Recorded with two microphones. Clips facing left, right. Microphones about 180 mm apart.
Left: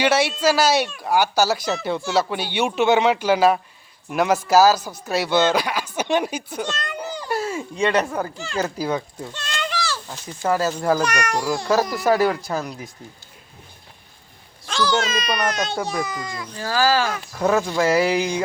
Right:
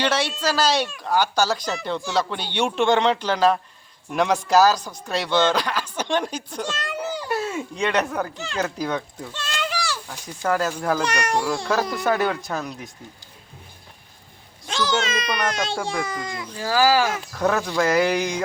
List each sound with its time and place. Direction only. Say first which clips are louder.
0.0 s speech: left 4 dB; 10° left (ahead or behind)
6.7 s a child's voice: right 1 dB; 5° right (ahead or behind)
9.3 s a sound: even; 5° right (ahead or behind)
10.4 s speech: left 2 dB; 10° left (ahead or behind)
11.0 s a child's voice: left 1 dB; 30° right (ahead or behind)
11.3 s speech: left 4 dB; centre (ahead or behind)
14.7 s a child's voice: left 2 dB; 20° right (ahead or behind)
15.7 s speech: left 1 dB; 5° left (ahead or behind)
16.0 s a child's voice: even; 25° right (ahead or behind)
16.6 s speech: right 1 dB; 10° right (ahead or behind)
17.3 s speech: left 3 dB; 5° left (ahead or behind)